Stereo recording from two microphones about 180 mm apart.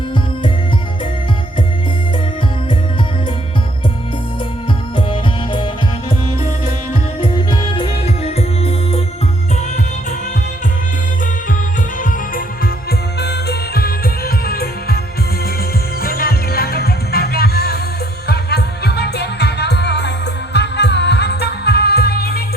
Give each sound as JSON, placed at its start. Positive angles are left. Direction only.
{"t": 7.2, "sound": "music", "side_deg": 25}
{"t": 13.1, "sound": "music", "side_deg": 65}
{"t": 16.0, "sound": "music", "side_deg": 55}